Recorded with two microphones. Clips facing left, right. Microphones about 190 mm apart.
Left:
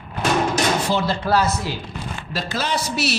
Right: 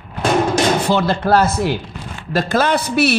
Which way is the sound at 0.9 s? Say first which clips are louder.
Right 5 dB; 55° right (ahead or behind).